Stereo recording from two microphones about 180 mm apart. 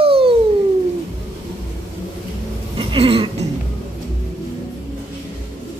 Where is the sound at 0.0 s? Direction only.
30° right (ahead or behind).